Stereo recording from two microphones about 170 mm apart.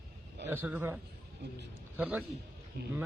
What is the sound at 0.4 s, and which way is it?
Speech, 10° right (ahead or behind).